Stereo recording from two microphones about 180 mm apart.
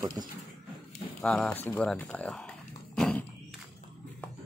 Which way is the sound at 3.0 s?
5° left (ahead or behind).